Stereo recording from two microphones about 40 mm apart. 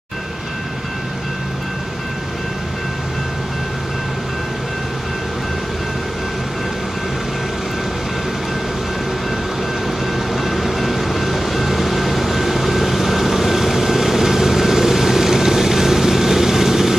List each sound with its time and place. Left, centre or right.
10.3 s vehicle: centre